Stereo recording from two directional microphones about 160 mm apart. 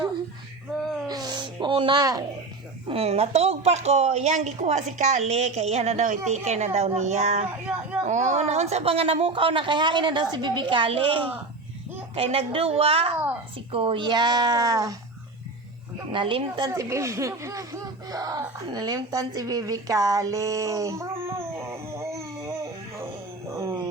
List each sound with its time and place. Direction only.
1.0 s music: 25° right (ahead or behind)
2.8 s a woman's voice: 40° right (ahead or behind); by 14.9 s 20° right (ahead or behind)
16.1 s speech: 30° right (ahead or behind)
18.7 s a sound: 25° right (ahead or behind)